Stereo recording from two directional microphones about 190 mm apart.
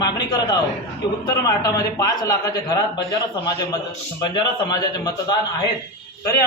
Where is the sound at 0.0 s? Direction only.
20° left (ahead or behind).